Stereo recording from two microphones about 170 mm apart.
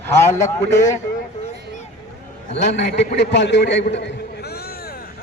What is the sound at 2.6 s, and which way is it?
A man's voice, 85° left.